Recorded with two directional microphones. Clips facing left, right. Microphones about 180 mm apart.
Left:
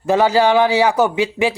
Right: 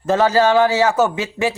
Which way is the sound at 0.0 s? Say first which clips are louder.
Left 1 dB; 15° left (ahead or behind).